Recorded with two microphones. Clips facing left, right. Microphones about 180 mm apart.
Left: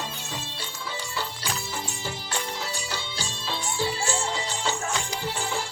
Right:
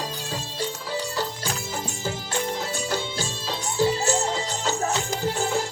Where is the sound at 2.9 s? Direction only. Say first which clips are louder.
Right 7 dB; 45° right (ahead or behind).